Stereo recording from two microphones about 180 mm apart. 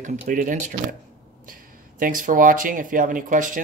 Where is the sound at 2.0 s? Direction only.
50° right (ahead or behind).